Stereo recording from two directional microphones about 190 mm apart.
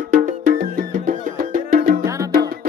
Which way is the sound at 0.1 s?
45° right (ahead or behind).